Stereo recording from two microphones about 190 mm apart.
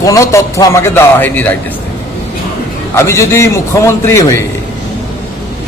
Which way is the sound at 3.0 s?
15° left (ahead or behind).